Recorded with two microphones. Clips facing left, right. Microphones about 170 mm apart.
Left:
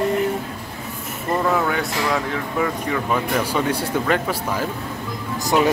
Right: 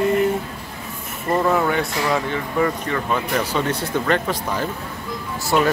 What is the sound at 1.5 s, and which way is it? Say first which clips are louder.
Speech: right 1 dB; centre (ahead or behind).